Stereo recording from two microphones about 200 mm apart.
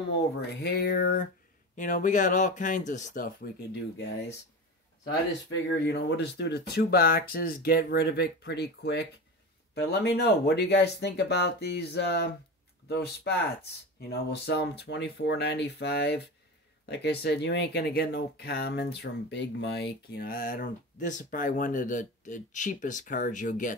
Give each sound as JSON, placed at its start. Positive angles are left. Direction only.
{"t": 0.4, "sound": "speech", "side_deg": 55}
{"t": 1.8, "sound": "speech", "side_deg": 40}
{"t": 5.5, "sound": "speech", "side_deg": 60}